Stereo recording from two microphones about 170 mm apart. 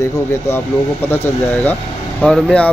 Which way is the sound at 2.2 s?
5° left (ahead or behind).